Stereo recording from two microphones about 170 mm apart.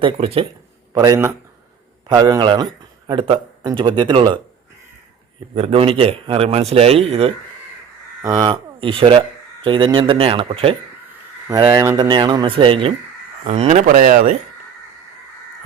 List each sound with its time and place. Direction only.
0.0 s a man's voice: 35° right (ahead or behind)
0.9 s speech: 20° right (ahead or behind)
5.5 s a man's voice: 35° right (ahead or behind)
8.2 s a man's voice: 20° right (ahead or behind)
11.7 s speech: 15° right (ahead or behind)
13.4 s speech: 40° right (ahead or behind)